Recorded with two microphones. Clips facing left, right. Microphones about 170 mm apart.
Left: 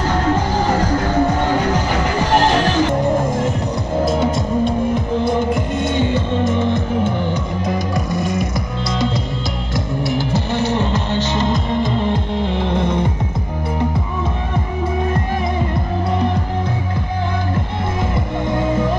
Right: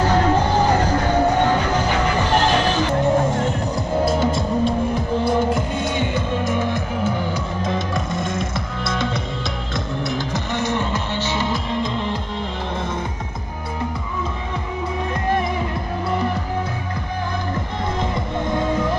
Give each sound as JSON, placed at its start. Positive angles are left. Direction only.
{"t": 4.1, "sound": "music", "side_deg": 0}
{"t": 5.9, "sound": "music", "side_deg": -15}
{"t": 10.9, "sound": "music", "side_deg": 15}
{"t": 12.6, "sound": "music", "side_deg": 65}